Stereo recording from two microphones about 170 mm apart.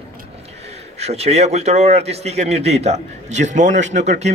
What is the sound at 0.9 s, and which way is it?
A man's voice, 40° right (ahead or behind).